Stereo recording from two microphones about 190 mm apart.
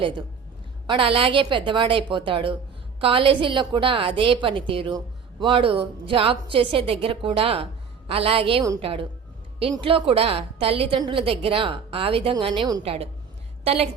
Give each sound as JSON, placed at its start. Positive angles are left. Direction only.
{"t": 0.9, "sound": "a woman's voice", "side_deg": -30}